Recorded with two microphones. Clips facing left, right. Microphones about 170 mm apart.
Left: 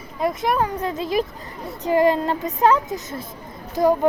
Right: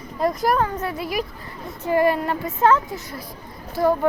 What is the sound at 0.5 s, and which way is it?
A child's voice, 15° left (ahead or behind).